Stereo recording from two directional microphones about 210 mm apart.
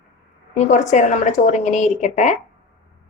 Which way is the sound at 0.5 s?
35° left (ahead or behind).